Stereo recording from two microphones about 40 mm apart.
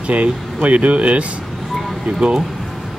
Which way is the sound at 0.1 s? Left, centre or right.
Right.